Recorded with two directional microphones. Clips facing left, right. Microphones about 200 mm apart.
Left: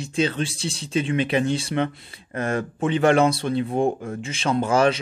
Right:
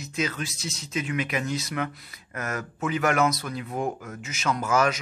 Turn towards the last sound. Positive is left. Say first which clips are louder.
# left 5 dB
turn(degrees=30)  # may be behind; listen again after turning